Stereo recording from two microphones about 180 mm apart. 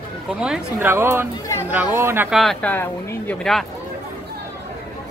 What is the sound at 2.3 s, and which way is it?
Speech, centre (ahead or behind).